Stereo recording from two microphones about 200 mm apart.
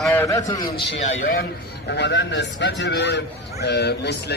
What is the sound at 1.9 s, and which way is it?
A man's voice, 60° left (ahead or behind).